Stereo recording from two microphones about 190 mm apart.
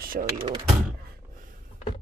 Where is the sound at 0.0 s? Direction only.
45° right (ahead or behind).